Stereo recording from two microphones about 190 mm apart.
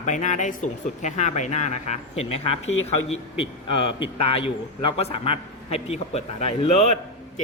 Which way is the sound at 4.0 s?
30° left (ahead or behind).